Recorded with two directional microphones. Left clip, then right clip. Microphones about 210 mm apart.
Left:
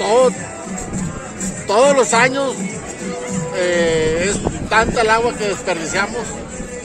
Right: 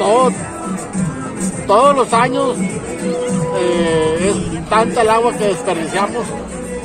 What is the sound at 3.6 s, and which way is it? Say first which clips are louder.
Speech: even; 5° left (ahead or behind).